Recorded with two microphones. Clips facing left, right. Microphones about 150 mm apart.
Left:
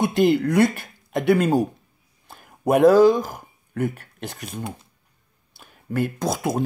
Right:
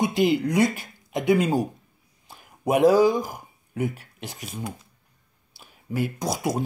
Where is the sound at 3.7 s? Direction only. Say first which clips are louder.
Left 2 dB; 55° left (ahead or behind).